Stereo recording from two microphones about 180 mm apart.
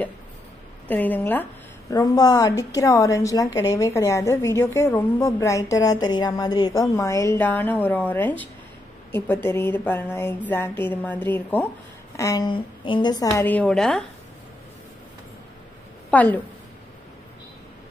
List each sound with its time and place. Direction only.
0.8 s a woman's voice: 10° left (ahead or behind)
16.1 s a woman's voice: 10° left (ahead or behind)